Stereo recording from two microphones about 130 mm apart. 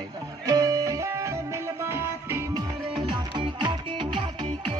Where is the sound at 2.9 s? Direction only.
35° right (ahead or behind).